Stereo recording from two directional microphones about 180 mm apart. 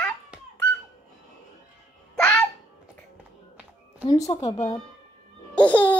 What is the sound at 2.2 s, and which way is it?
Music, 5° left (ahead or behind).